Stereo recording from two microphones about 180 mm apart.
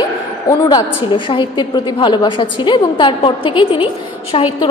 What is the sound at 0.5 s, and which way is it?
A woman's voice, 20° left (ahead or behind).